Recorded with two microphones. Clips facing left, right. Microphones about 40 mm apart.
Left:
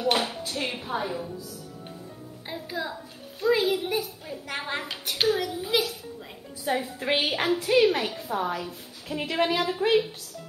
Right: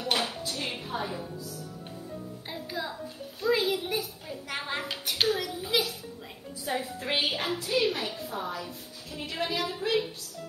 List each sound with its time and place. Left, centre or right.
0.0 s music: left
1.0 s a woman's voice: centre
2.5 s a child's voice: centre
6.6 s a woman's voice: centre
7.3 s a woman's voice: left